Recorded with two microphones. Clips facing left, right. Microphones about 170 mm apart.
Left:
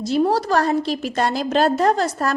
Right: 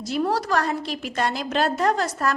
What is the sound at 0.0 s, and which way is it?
A woman's voice, 25° left (ahead or behind).